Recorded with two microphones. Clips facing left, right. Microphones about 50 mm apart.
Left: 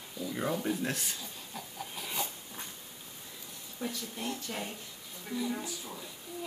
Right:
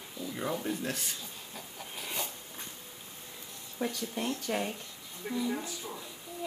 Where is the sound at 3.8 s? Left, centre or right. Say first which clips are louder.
Right 4 dB; right.